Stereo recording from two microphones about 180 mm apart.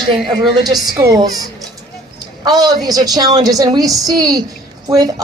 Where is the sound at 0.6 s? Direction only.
20° right (ahead or behind).